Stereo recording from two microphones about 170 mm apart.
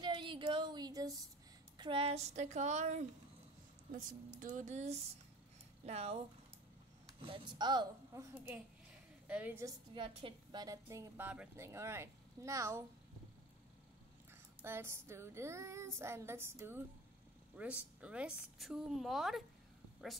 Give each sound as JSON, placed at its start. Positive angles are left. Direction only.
{"t": 0.0, "sound": "a sound", "side_deg": -30}
{"t": 1.8, "sound": "speech", "side_deg": -30}
{"t": 7.2, "sound": "a woman's voice", "side_deg": -30}
{"t": 9.9, "sound": "a woman's voice", "side_deg": -30}
{"t": 14.6, "sound": "a woman's voice", "side_deg": -15}